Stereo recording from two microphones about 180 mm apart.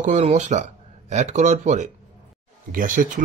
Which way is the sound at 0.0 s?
40° right (ahead or behind).